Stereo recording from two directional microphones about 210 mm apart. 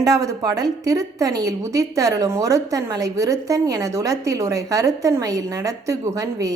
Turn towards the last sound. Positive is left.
turn(degrees=-15)  # may be behind; listen again after turning